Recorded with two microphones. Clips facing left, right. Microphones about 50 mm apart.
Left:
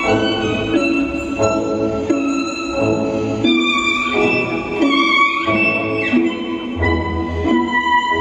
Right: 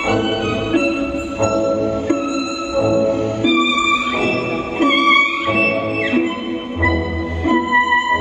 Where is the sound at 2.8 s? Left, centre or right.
Left.